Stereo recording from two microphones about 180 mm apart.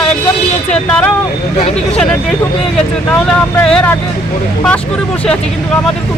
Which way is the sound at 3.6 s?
5° left (ahead or behind).